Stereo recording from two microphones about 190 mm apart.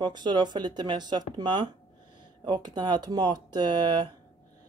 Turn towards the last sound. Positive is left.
turn(degrees=-20)  # may be behind; listen again after turning